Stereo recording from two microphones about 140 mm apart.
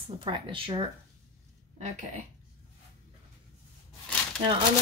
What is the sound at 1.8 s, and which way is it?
Speech, 55° right (ahead or behind).